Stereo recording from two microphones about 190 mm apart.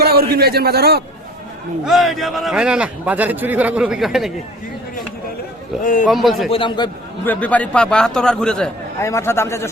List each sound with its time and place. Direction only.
0.0 s a man's voice: 55° right (ahead or behind)
1.8 s a man's voice: centre (ahead or behind)
5.8 s a man's voice: 45° left (ahead or behind)
6.1 s a man's voice: centre (ahead or behind)
6.5 s a man's voice: 25° left (ahead or behind)
7.3 s a man's voice: 10° left (ahead or behind)